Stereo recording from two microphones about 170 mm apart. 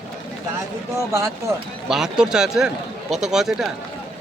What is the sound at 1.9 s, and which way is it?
Speech, 5° right (ahead or behind).